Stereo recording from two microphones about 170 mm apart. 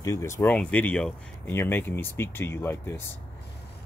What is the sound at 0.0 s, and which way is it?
Speech, 15° left (ahead or behind).